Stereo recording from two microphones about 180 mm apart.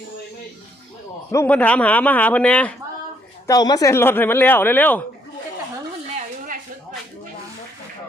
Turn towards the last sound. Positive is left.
turn(degrees=-45)  # may be behind; listen again after turning